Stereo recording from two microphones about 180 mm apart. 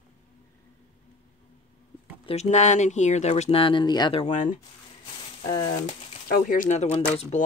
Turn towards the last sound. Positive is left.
turn(degrees=40)  # may be behind; listen again after turning